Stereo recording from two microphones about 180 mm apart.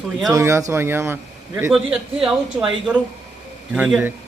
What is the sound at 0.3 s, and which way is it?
A man's voice, 15° right (ahead or behind).